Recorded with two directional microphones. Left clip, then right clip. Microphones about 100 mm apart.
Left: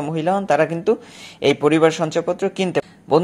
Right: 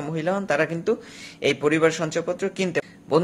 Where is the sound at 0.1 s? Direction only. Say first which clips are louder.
Left 5 dB; 35° left (ahead or behind).